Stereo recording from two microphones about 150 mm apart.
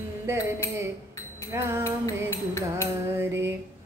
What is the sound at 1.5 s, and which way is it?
Female singing, 15° right (ahead or behind).